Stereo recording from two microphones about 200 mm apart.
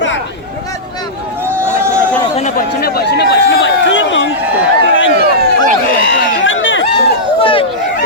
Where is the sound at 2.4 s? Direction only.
40° left (ahead or behind); by 4.3 s 65° left (ahead or behind).